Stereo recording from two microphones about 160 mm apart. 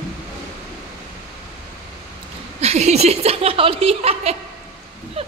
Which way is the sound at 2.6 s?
40° right (ahead or behind).